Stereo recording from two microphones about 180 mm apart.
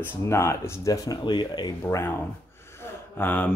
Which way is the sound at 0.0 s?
15° left (ahead or behind).